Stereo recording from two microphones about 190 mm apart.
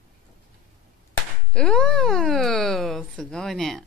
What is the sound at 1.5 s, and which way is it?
Speech, 5° left (ahead or behind).